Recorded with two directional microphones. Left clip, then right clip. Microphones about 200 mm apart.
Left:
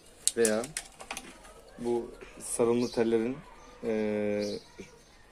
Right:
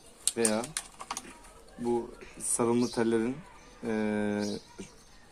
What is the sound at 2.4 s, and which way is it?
Speech, 35° right (ahead or behind).